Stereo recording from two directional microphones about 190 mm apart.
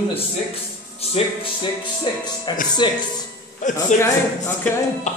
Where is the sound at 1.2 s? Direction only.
35° left (ahead or behind).